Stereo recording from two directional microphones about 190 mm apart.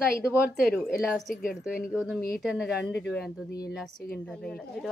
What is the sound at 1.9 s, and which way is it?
Speech, 5° right (ahead or behind).